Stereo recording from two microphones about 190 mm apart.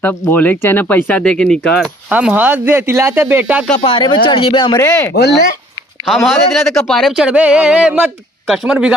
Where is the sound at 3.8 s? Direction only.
25° left (ahead or behind).